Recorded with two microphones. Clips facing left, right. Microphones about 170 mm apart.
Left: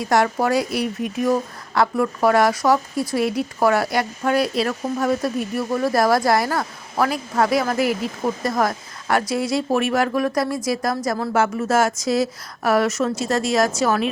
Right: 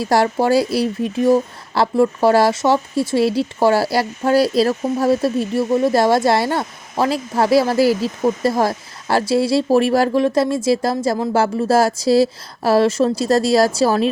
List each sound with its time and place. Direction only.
0.0 s a woman's voice: 30° right (ahead or behind)